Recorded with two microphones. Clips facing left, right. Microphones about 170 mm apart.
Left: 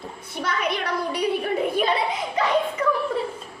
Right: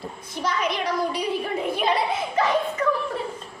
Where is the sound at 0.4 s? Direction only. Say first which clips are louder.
Right 1 dB; 55° left (ahead or behind).